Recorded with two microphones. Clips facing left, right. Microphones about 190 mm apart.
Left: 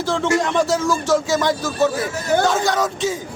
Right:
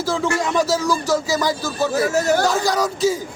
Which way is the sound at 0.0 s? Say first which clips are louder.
Even; 5° right (ahead or behind).